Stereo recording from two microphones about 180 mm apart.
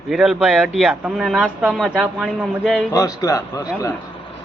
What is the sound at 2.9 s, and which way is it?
Speech, 20° left (ahead or behind).